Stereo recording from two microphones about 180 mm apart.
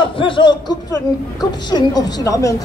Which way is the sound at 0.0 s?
30° left (ahead or behind).